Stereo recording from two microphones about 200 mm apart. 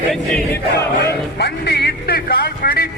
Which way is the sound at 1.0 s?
55° left (ahead or behind).